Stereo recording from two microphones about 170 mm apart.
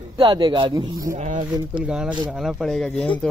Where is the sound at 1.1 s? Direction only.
50° right (ahead or behind).